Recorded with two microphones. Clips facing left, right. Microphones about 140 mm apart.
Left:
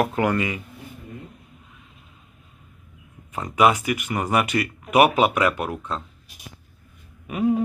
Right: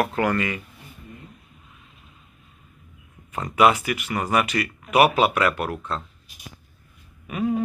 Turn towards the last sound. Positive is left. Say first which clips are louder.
# left 3 dB
turn(degrees=15)  # may be behind; listen again after turning